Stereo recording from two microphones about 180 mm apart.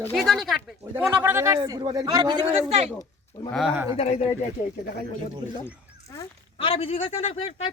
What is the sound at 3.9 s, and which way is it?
Speech, 35° left (ahead or behind).